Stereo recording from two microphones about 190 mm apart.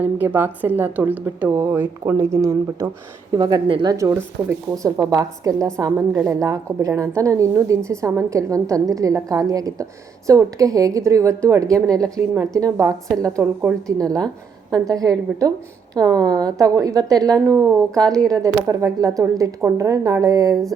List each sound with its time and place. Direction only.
0.0 s a woman's voice: 10° right (ahead or behind)